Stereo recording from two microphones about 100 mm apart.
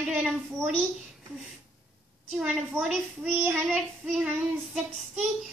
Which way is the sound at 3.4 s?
20° right (ahead or behind).